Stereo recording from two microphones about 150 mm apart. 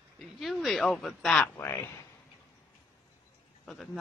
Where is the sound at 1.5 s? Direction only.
20° left (ahead or behind).